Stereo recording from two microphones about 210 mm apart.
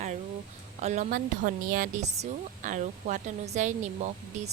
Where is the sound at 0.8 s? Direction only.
35° right (ahead or behind).